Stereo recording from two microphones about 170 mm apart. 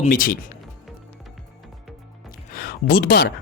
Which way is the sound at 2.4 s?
60° left (ahead or behind).